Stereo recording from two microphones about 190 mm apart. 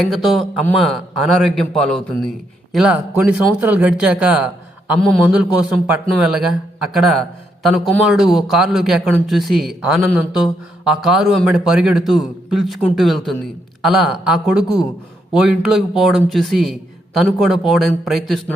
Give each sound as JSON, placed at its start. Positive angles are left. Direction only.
{"t": 0.0, "sound": "a man's voice", "side_deg": 0}
{"t": 14.6, "sound": "speech", "side_deg": 20}
{"t": 15.3, "sound": "a man's voice", "side_deg": -5}